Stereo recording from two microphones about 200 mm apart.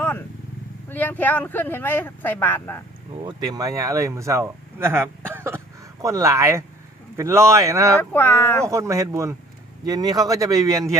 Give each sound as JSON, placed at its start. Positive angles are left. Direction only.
{"t": 0.9, "sound": "speech", "side_deg": 10}
{"t": 3.2, "sound": "speech", "side_deg": -20}
{"t": 7.9, "sound": "speech", "side_deg": 10}
{"t": 8.6, "sound": "speech", "side_deg": -15}